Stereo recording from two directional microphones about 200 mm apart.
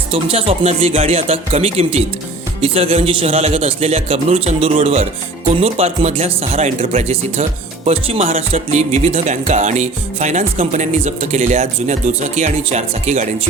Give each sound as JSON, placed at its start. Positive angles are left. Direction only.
{"t": 0.1, "sound": "a man's voice", "side_deg": -30}